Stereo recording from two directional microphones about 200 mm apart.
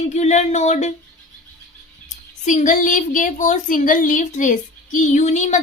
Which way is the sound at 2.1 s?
40° left (ahead or behind).